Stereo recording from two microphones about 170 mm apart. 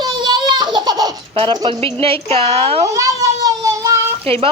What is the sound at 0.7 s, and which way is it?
Baby laughter, 25° right (ahead or behind).